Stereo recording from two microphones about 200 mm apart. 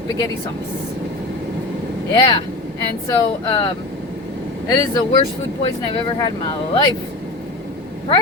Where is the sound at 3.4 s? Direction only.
25° left (ahead or behind).